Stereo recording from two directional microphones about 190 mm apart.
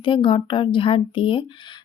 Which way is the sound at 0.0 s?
25° left (ahead or behind).